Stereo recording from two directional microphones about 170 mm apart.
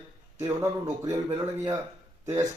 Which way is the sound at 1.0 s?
15° right (ahead or behind).